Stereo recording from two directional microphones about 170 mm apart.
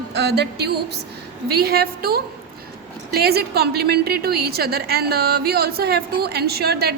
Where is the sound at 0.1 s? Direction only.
75° right (ahead or behind).